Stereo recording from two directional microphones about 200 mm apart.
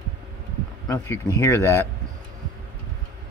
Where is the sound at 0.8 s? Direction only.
15° left (ahead or behind).